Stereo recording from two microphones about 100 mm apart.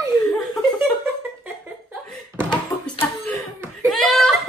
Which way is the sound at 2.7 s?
45° left (ahead or behind).